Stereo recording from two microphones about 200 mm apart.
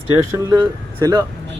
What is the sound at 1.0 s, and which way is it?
Speech, 20° right (ahead or behind).